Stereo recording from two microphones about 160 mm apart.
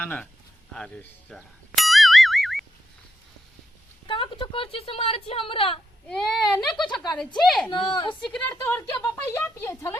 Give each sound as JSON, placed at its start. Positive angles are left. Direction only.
{"t": 0.0, "sound": "a woman's voice", "side_deg": 10}
{"t": 0.7, "sound": "music", "side_deg": 5}
{"t": 4.0, "sound": "speech", "side_deg": 30}
{"t": 6.1, "sound": "speech", "side_deg": 5}
{"t": 7.7, "sound": "a woman's voice", "side_deg": 30}
{"t": 8.2, "sound": "speech", "side_deg": 5}
{"t": 8.6, "sound": "a woman's voice", "side_deg": 20}